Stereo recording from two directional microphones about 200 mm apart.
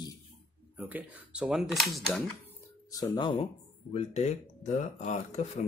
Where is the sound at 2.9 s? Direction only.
20° left (ahead or behind).